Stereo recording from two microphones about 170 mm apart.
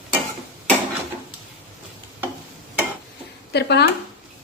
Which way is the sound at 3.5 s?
80° left.